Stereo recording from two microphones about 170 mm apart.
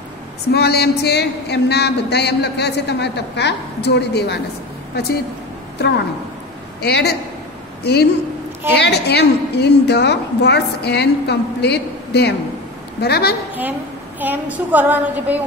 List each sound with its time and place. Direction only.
0.5 s speech: 70° left (ahead or behind)
6.8 s a woman's voice: 75° left (ahead or behind)
14.2 s a woman's voice: 10° right (ahead or behind)